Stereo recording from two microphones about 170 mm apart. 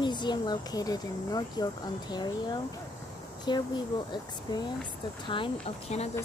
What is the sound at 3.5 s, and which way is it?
Speech, 25° left (ahead or behind).